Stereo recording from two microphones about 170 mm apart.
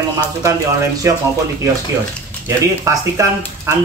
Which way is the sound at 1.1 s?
15° right (ahead or behind).